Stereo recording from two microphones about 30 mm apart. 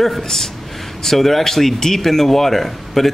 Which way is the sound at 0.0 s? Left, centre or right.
Centre.